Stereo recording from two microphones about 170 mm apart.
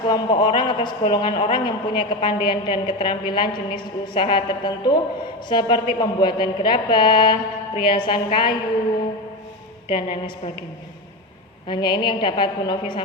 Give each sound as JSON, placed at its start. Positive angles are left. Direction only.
{"t": 0.1, "sound": "a woman's voice", "side_deg": 25}
{"t": 9.9, "sound": "a woman's voice", "side_deg": 30}
{"t": 11.7, "sound": "a woman's voice", "side_deg": 25}